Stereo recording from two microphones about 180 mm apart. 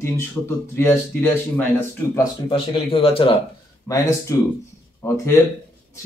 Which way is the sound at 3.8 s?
20° left (ahead or behind).